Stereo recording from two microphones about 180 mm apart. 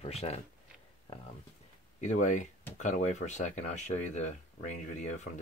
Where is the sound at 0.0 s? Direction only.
35° left (ahead or behind).